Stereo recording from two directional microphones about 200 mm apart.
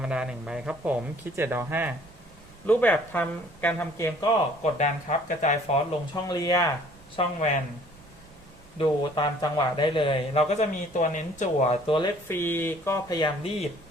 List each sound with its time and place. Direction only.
0.0 s speech: 5° right (ahead or behind)
2.6 s speech: 10° left (ahead or behind)
4.6 s speech: 35° left (ahead or behind)
6.2 s speech: 20° left (ahead or behind)
7.2 s speech: 35° left (ahead or behind)
8.8 s a man's voice: 20° left (ahead or behind); by 11.8 s 40° left (ahead or behind)
11.9 s a man's voice: 25° left (ahead or behind)
12.3 s speech: 10° left (ahead or behind)